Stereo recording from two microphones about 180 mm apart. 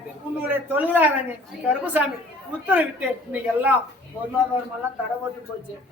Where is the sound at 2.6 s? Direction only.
10° right (ahead or behind).